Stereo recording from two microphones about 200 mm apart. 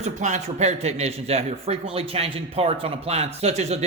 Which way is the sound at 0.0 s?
35° right (ahead or behind).